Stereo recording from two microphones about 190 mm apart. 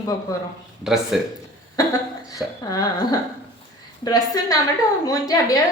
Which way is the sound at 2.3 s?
20° left (ahead or behind).